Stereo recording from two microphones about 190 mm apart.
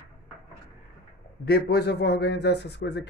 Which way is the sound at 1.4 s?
55° left (ahead or behind).